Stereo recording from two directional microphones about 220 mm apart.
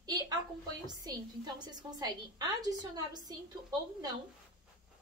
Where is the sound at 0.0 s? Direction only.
15° right (ahead or behind).